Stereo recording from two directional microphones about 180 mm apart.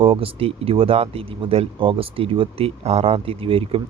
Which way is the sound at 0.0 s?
30° right (ahead or behind).